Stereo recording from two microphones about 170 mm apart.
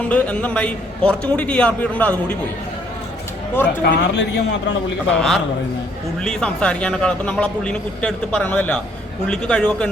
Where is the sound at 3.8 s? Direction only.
90° left.